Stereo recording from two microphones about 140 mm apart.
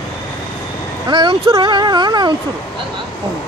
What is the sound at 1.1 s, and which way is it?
Speech, 35° right (ahead or behind).